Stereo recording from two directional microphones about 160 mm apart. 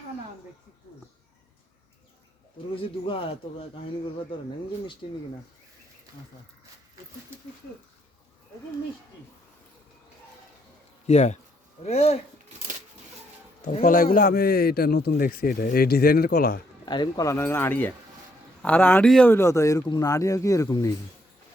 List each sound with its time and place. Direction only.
2.7 s speech: 35° left (ahead or behind)
11.0 s speech: 45° left (ahead or behind)
13.8 s speech: 60° left (ahead or behind)
16.8 s speech: 25° left (ahead or behind)